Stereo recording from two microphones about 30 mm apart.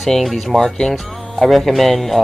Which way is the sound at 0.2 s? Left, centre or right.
Centre.